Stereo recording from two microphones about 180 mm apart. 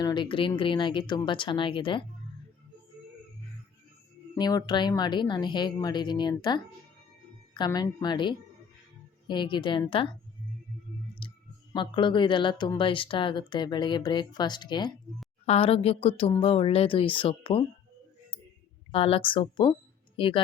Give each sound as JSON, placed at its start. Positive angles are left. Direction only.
{"t": 0.0, "sound": "speech", "side_deg": 25}
{"t": 4.4, "sound": "speech", "side_deg": 25}
{"t": 11.7, "sound": "speech", "side_deg": 25}
{"t": 18.9, "sound": "a woman's voice", "side_deg": 30}